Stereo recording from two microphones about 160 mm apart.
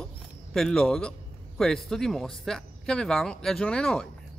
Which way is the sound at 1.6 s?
Centre (ahead or behind).